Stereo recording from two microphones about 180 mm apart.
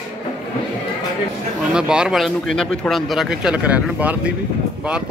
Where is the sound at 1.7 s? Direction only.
5° right (ahead or behind).